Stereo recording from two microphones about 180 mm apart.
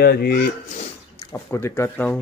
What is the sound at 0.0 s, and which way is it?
Speech, 60° left (ahead or behind).